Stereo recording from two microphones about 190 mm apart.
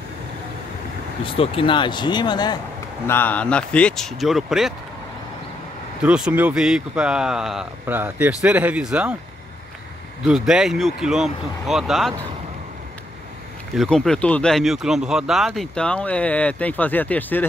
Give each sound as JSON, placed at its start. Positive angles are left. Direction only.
{"t": 1.2, "sound": "speech", "side_deg": 30}
{"t": 3.1, "sound": "speech", "side_deg": 10}
{"t": 6.0, "sound": "speech", "side_deg": -5}
{"t": 10.2, "sound": "speech", "side_deg": -5}
{"t": 13.7, "sound": "speech", "side_deg": 5}